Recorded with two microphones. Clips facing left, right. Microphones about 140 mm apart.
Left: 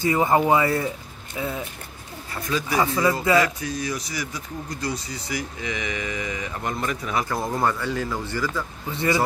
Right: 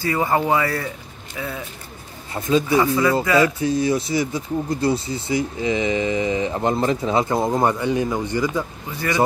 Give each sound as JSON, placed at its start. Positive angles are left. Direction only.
{"t": 0.0, "sound": "speech", "side_deg": 20}
{"t": 2.3, "sound": "speech", "side_deg": -25}